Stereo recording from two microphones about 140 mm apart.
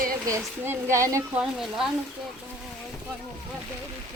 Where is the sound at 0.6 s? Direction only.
20° right (ahead or behind).